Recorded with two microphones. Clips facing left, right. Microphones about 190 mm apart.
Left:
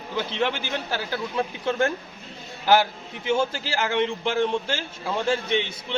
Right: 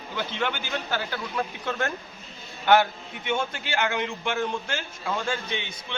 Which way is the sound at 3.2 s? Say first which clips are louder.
Left 5 dB; 30° left (ahead or behind).